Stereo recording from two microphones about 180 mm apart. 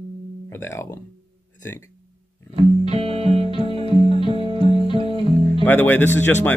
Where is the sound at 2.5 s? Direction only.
35° right (ahead or behind).